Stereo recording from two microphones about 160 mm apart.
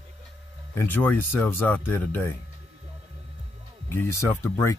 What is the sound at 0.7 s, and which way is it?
Speech, 15° left (ahead or behind).